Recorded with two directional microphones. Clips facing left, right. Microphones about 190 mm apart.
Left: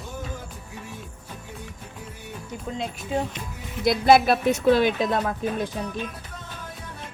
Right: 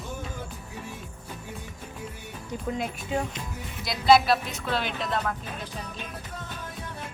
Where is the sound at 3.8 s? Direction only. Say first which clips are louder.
Left 3 dB; 55° left (ahead or behind).